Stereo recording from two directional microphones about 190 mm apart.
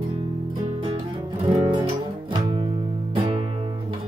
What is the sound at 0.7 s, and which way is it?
Music, 30° right (ahead or behind).